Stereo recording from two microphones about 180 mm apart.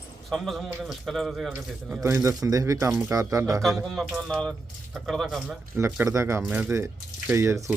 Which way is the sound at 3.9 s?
Centre (ahead or behind).